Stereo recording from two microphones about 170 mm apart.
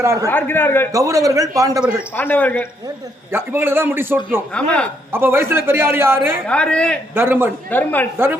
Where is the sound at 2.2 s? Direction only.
10° left (ahead or behind).